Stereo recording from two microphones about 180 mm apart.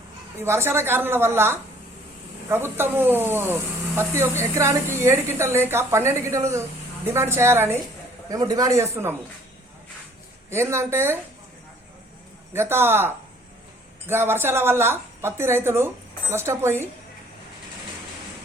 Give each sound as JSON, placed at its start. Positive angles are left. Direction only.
{"t": 0.3, "sound": "speech", "side_deg": -15}
{"t": 10.5, "sound": "speech", "side_deg": -15}
{"t": 12.5, "sound": "speech", "side_deg": -15}